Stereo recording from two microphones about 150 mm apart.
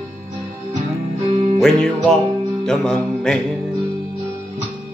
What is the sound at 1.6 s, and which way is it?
Music, 5° left (ahead or behind).